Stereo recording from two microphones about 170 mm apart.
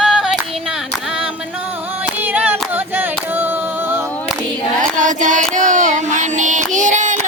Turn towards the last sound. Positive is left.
turn(degrees=-45)  # may be behind; listen again after turning